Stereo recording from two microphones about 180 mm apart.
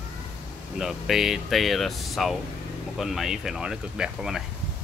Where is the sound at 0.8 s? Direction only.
Centre (ahead or behind).